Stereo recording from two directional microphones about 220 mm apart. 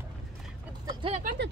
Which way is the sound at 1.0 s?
25° right (ahead or behind).